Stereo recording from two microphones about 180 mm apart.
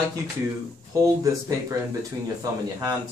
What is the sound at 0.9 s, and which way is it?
Speech, 15° right (ahead or behind).